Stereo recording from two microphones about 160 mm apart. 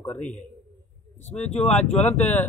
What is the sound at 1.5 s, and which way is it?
Speech, 10° left (ahead or behind).